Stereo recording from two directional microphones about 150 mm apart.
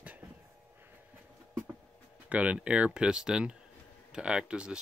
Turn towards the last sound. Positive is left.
turn(degrees=-5)  # may be behind; listen again after turning